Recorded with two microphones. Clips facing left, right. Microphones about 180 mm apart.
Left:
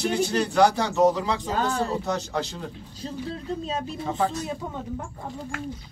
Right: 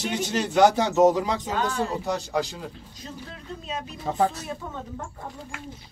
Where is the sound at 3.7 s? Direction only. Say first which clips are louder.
Left 4 dB; 30° left (ahead or behind).